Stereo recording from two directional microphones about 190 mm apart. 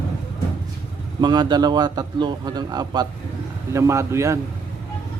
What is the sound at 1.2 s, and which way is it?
A man's voice, 20° right (ahead or behind).